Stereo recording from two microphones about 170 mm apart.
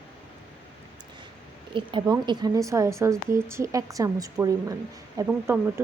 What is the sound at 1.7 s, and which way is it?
A woman's voice, 30° right (ahead or behind).